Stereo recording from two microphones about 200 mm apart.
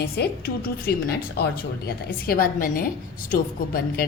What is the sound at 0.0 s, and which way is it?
A woman's voice, 50° left (ahead or behind).